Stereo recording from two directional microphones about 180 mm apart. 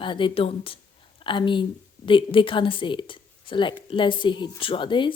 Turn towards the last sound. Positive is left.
turn(degrees=25)  # may be behind; listen again after turning